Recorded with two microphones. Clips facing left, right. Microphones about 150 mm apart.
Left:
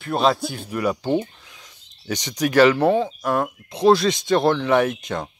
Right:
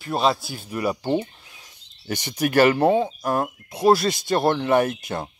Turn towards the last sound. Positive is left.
turn(degrees=-5)  # may be behind; listen again after turning